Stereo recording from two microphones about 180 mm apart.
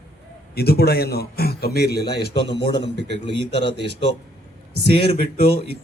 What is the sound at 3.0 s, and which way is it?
A man's voice, 70° right (ahead or behind).